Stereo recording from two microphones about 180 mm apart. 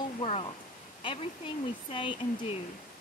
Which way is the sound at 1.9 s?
30° left (ahead or behind).